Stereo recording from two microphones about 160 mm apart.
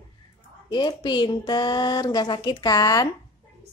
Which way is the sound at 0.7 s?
25° left (ahead or behind).